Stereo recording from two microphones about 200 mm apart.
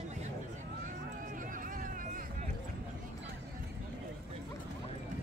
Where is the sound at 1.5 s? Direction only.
45° right (ahead or behind).